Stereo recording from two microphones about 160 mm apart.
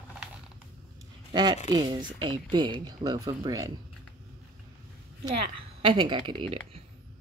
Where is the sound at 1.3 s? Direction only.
25° right (ahead or behind).